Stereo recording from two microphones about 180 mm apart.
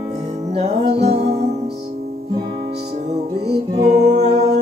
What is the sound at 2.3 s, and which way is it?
Music, 25° right (ahead or behind).